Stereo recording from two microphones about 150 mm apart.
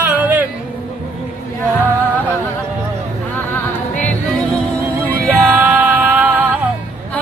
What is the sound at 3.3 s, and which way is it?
Music, 10° left (ahead or behind).